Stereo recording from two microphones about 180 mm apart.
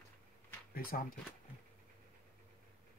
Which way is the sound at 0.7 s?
55° left (ahead or behind).